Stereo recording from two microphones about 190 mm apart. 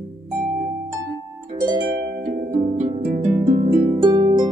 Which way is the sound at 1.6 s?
20° right (ahead or behind).